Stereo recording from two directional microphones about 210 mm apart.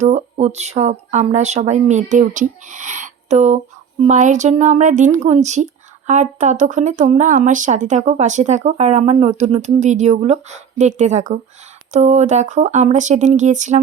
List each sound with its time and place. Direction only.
0.0 s speech: 35° right (ahead or behind)